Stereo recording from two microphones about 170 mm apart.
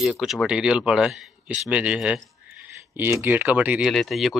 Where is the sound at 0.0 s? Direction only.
Centre (ahead or behind).